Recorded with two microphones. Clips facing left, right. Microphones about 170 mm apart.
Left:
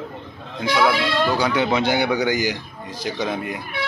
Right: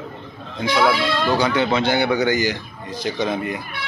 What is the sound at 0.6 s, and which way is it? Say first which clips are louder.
Speech: right 1 dB; centre (ahead or behind).